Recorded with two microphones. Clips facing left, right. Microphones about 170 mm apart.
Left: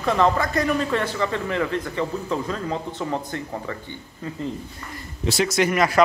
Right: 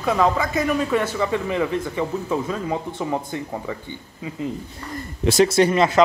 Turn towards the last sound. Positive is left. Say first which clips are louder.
# right 3 dB
turn(degrees=-25)  # may be behind; listen again after turning